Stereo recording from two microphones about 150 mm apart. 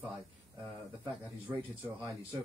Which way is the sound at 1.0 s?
10° right (ahead or behind).